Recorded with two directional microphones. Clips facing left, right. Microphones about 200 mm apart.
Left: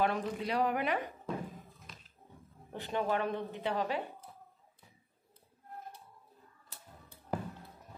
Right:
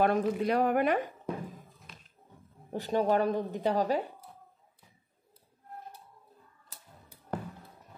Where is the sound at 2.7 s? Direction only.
40° right (ahead or behind).